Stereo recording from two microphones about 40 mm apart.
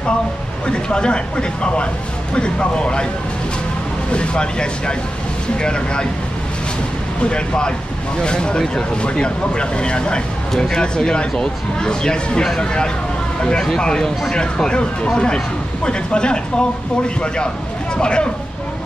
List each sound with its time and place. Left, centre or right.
0.7 s speech: left
4.1 s speech: left
7.2 s speech: left
17.9 s speech: left